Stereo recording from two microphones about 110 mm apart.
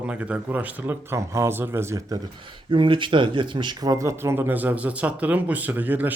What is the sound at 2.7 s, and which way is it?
Speech, 50° right (ahead or behind).